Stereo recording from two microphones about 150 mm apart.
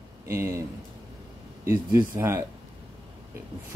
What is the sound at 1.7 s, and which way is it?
Speech, 15° right (ahead or behind).